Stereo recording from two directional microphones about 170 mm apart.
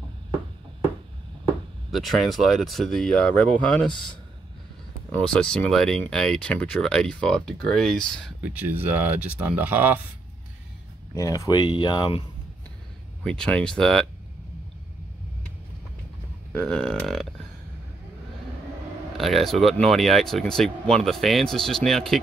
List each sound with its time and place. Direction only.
1.9 s speech: centre (ahead or behind)
5.1 s speech: 5° left (ahead or behind)
8.4 s speech: 10° right (ahead or behind)
11.1 s speech: 20° left (ahead or behind)
13.2 s speech: 5° left (ahead or behind)
16.5 s speech: 5° left (ahead or behind)
19.1 s speech: centre (ahead or behind)